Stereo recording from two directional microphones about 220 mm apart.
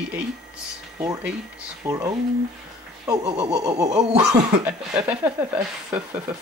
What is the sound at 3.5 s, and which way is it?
Speech, 15° right (ahead or behind).